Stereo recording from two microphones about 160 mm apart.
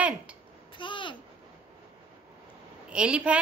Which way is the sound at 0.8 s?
30° left (ahead or behind).